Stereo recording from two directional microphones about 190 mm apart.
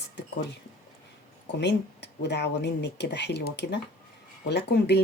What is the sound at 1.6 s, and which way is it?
A woman's voice, 65° left (ahead or behind).